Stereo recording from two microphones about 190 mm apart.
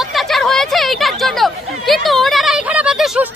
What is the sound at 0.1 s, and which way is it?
Chatter, centre (ahead or behind).